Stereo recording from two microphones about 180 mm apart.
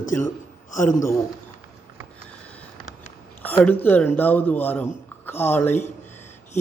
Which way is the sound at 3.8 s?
10° left (ahead or behind).